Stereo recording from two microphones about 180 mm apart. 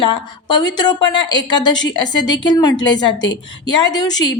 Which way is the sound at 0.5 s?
25° left (ahead or behind).